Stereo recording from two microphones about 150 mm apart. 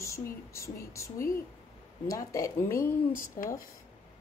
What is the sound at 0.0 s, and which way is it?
Speech, 20° left (ahead or behind).